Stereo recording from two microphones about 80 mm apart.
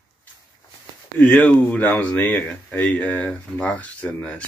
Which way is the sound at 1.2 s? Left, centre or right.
Centre.